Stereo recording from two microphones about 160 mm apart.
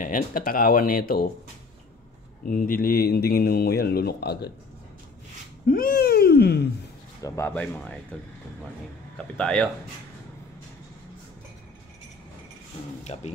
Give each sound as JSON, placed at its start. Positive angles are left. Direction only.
{"t": 0.0, "sound": "speech", "side_deg": 60}
{"t": 2.4, "sound": "speech", "side_deg": 60}
{"t": 5.7, "sound": "speech", "side_deg": 65}
{"t": 7.2, "sound": "speech", "side_deg": 20}
{"t": 9.4, "sound": "speech", "side_deg": 5}
{"t": 13.0, "sound": "speech", "side_deg": 45}